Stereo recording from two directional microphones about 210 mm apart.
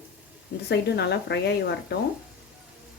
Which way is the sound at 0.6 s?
50° left (ahead or behind).